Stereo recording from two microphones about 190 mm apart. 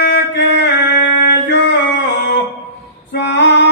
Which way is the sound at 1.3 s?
65° left (ahead or behind).